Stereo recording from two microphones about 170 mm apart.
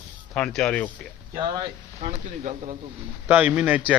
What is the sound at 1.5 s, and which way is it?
Speech, 25° right (ahead or behind).